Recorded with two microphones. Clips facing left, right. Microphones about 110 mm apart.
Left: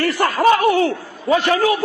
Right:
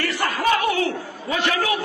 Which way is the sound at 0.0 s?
40° left (ahead or behind).